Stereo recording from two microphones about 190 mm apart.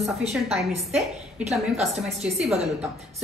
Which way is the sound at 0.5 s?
Centre (ahead or behind).